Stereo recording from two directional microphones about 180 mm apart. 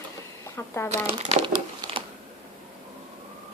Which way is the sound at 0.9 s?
35° right (ahead or behind).